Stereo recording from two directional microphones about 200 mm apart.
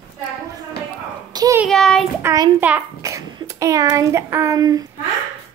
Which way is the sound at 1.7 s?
Centre (ahead or behind).